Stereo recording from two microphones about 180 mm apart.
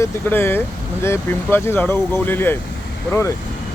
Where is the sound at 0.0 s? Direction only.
10° left (ahead or behind).